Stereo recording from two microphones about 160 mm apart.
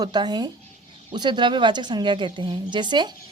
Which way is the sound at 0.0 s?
25° right (ahead or behind).